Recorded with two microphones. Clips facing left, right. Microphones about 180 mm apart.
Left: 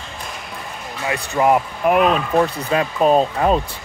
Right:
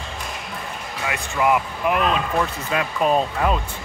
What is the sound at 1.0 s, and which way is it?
Speech, 35° left (ahead or behind).